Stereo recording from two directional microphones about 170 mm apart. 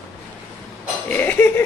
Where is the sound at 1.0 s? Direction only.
10° left (ahead or behind).